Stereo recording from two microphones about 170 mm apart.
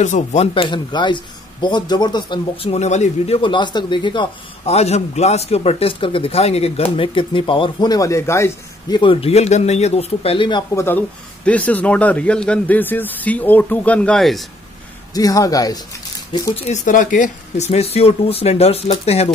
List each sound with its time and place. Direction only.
0.0 s speech: 45° left (ahead or behind)
0.7 s speech: 25° left (ahead or behind); by 3.3 s 45° left (ahead or behind)
3.3 s speech: 30° left (ahead or behind)
9.0 s speech: 35° left (ahead or behind)
10.7 s a man's voice: 15° left (ahead or behind)
15.1 s speech: 20° left (ahead or behind)
16.5 s speech: 45° left (ahead or behind)